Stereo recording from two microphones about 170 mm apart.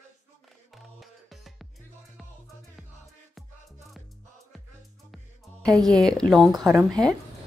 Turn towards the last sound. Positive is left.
turn(degrees=0)  # may be behind; listen again after turning